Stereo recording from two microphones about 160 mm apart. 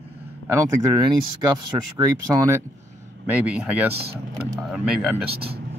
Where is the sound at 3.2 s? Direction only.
10° right (ahead or behind).